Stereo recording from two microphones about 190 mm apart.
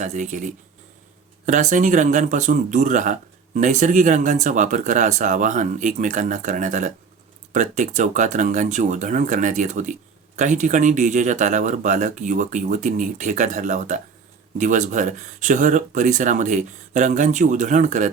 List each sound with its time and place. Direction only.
0.0 s speech: 40° right (ahead or behind)
1.5 s speech: 40° right (ahead or behind)